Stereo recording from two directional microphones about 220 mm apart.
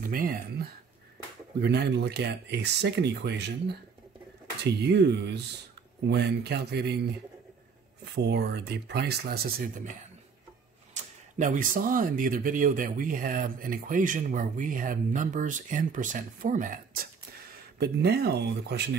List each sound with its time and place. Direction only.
0.0 s speech: 40° right (ahead or behind)
8.0 s speech: 50° right (ahead or behind)
11.0 s speech: 35° right (ahead or behind)